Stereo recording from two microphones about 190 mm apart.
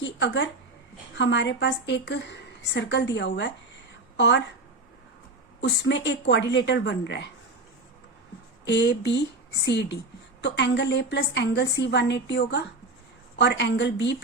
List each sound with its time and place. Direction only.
0.0 s a sound: 70° left (ahead or behind)
1.2 s a woman's voice: 70° left (ahead or behind)
5.5 s a woman's voice: 75° left (ahead or behind)
8.6 s a woman's voice: 65° left (ahead or behind)